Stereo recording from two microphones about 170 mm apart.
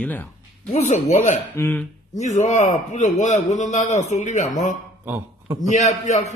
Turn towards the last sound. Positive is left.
turn(degrees=45)  # may be behind; listen again after turning